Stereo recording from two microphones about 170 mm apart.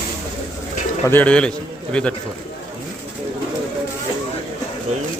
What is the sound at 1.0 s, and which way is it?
A man's voice, 10° left (ahead or behind).